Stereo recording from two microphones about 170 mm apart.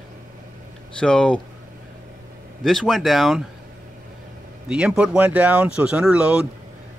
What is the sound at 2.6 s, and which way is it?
Speech, centre (ahead or behind).